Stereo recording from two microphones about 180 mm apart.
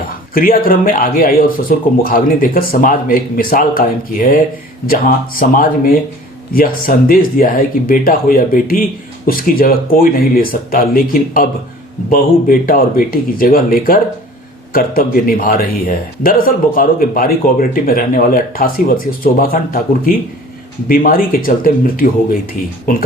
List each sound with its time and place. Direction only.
0.3 s speech: 50° left (ahead or behind)